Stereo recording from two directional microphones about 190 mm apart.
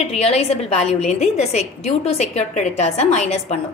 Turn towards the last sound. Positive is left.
turn(degrees=35)  # may be behind; listen again after turning